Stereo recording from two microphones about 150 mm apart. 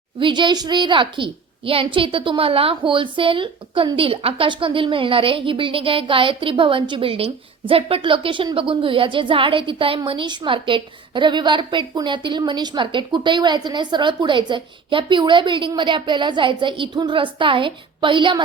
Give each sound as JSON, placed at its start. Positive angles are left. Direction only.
{"t": 0.2, "sound": "a woman's voice", "side_deg": -30}